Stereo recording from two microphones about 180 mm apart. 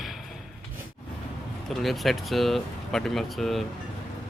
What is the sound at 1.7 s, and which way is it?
Speech, centre (ahead or behind).